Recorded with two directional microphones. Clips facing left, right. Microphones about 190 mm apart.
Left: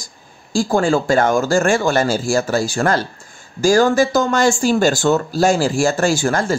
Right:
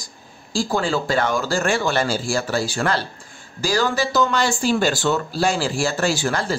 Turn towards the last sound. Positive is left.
turn(degrees=45)  # may be behind; listen again after turning